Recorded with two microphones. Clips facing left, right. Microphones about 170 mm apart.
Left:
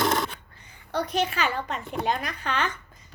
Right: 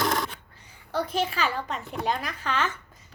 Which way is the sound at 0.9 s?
Centre (ahead or behind).